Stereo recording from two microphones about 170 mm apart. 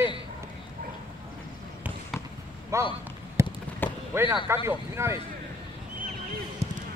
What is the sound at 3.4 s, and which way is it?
Fireworks, 15° right (ahead or behind).